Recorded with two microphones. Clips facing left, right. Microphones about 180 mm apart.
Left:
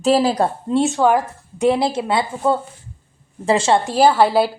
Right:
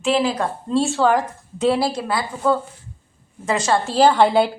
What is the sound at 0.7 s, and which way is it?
A woman's voice, 20° left (ahead or behind).